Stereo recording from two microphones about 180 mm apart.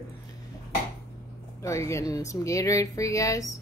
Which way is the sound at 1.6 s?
15° left (ahead or behind).